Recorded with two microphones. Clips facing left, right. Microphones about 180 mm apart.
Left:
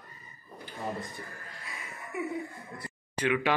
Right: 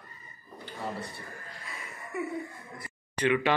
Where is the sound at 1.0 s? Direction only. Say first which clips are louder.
Even; 15° left (ahead or behind).